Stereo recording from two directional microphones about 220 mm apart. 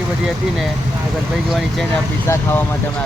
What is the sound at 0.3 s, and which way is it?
Speech, centre (ahead or behind).